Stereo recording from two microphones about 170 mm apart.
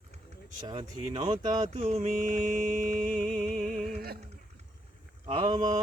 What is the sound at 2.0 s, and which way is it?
Music, 50° right (ahead or behind).